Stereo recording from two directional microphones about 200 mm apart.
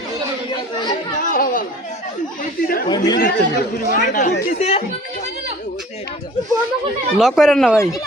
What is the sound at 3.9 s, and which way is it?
Speech, 40° left (ahead or behind).